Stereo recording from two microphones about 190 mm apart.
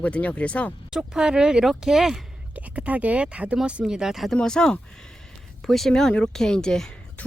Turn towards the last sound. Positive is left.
turn(degrees=5)  # may be behind; listen again after turning